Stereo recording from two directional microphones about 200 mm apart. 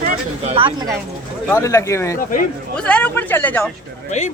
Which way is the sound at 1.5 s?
15° left (ahead or behind).